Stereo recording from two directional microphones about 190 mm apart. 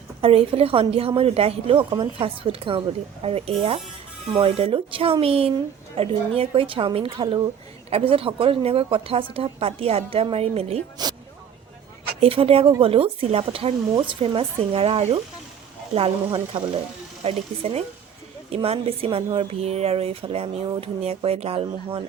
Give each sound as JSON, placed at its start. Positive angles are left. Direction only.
{"t": 0.2, "sound": "speech", "side_deg": -30}
{"t": 11.0, "sound": "a sound", "side_deg": -20}
{"t": 12.2, "sound": "speech", "side_deg": -30}